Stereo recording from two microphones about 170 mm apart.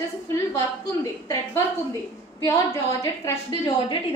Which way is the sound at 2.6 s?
15° left (ahead or behind).